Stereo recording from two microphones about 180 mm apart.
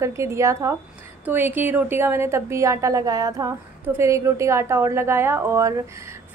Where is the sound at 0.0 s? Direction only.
15° right (ahead or behind).